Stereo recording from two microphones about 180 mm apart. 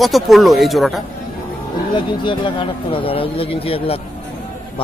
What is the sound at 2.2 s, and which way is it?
Speech, 25° left (ahead or behind).